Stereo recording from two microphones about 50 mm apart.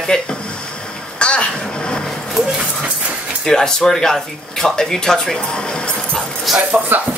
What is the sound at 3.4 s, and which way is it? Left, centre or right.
Speech, centre.